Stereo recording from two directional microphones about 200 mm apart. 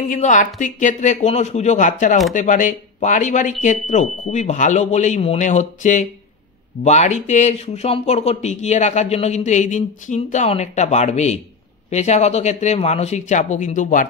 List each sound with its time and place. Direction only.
0.1 s speech: 40° left (ahead or behind)